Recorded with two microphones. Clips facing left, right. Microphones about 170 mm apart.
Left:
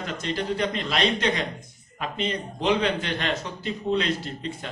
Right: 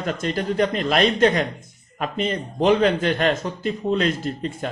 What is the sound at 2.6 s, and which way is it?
Speech, 50° right (ahead or behind).